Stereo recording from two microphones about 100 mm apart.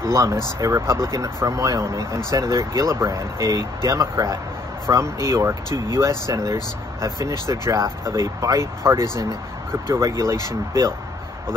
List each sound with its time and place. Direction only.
0.0 s speech: 30° right (ahead or behind)